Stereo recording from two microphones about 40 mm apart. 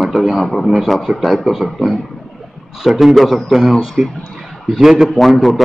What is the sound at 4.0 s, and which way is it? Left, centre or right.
Speech, centre.